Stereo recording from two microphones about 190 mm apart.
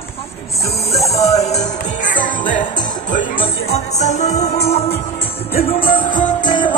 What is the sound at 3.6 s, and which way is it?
Music, 35° left (ahead or behind).